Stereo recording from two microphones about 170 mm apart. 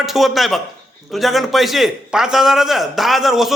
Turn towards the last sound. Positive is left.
turn(degrees=0)  # may be behind; listen again after turning